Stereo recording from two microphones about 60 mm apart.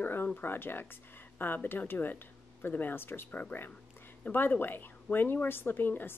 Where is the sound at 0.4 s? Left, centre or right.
Left.